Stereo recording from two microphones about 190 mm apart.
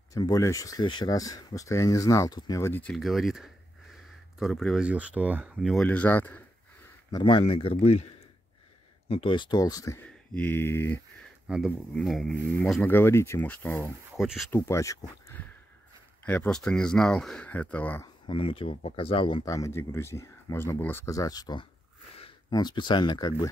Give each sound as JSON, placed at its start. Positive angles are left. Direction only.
{"t": 0.1, "sound": "speech", "side_deg": 20}
{"t": 5.6, "sound": "speech", "side_deg": 5}
{"t": 7.1, "sound": "speech", "side_deg": 25}
{"t": 9.1, "sound": "speech", "side_deg": 25}
{"t": 11.4, "sound": "speech", "side_deg": -5}
{"t": 14.1, "sound": "speech", "side_deg": 0}
{"t": 14.5, "sound": "speech", "side_deg": 15}
{"t": 18.0, "sound": "speech", "side_deg": 25}